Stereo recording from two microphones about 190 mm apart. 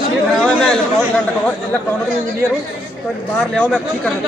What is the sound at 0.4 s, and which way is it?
Chatter, centre (ahead or behind).